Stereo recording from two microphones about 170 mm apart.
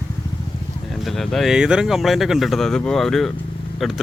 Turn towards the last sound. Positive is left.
turn(degrees=0)  # may be behind; listen again after turning